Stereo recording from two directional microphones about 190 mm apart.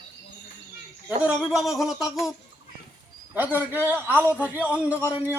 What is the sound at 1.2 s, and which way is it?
Speech, 5° right (ahead or behind).